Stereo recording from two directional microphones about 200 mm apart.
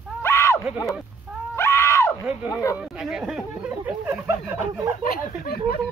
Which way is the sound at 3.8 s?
10° right (ahead or behind).